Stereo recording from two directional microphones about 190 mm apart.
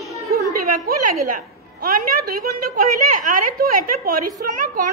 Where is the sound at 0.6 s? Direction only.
45° right (ahead or behind).